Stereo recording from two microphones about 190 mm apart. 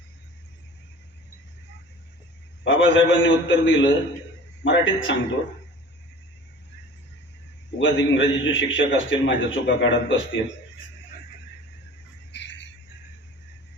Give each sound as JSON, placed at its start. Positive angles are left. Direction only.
{"t": 2.6, "sound": "a man's voice", "side_deg": 85}
{"t": 7.8, "sound": "a man's voice", "side_deg": 80}
{"t": 12.3, "sound": "a sound", "side_deg": 65}